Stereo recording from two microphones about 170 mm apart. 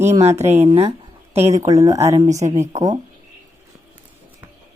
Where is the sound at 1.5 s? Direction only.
20° right (ahead or behind).